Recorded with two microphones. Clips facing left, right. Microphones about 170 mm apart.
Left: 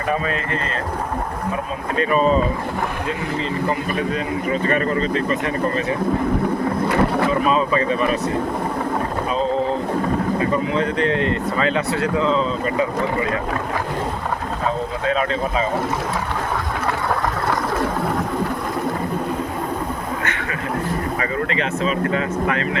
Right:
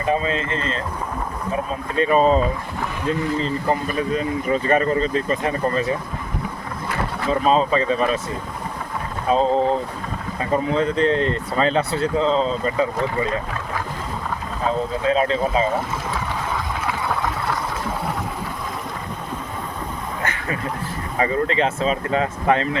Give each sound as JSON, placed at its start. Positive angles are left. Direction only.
{"t": 0.1, "sound": "speech", "side_deg": -25}
{"t": 2.0, "sound": "speech", "side_deg": -35}
{"t": 3.7, "sound": "speech", "side_deg": -40}
{"t": 7.4, "sound": "speech", "side_deg": -30}
{"t": 10.7, "sound": "speech", "side_deg": -35}
{"t": 15.0, "sound": "speech", "side_deg": -30}
{"t": 21.2, "sound": "speech", "side_deg": -35}